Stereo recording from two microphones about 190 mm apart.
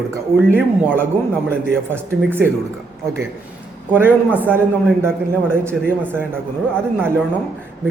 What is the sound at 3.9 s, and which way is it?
A man's voice, 10° right (ahead or behind).